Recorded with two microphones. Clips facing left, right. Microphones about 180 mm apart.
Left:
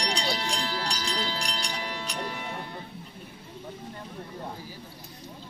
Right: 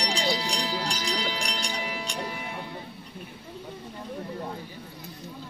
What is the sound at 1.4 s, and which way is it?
Music, 5° right (ahead or behind).